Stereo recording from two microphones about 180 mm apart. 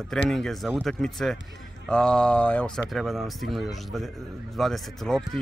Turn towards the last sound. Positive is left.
turn(degrees=0)  # may be behind; listen again after turning